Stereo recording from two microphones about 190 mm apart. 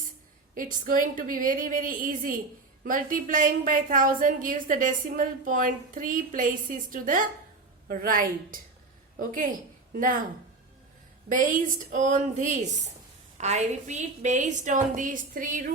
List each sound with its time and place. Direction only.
0.5 s a woman's voice: 45° right (ahead or behind)
11.3 s a woman's voice: 45° right (ahead or behind)